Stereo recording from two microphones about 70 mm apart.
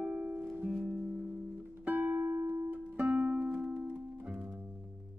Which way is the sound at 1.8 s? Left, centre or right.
Right.